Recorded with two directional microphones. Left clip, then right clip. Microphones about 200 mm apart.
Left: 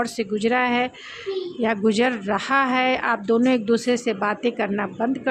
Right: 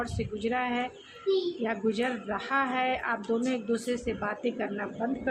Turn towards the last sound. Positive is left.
turn(degrees=50)  # may be behind; listen again after turning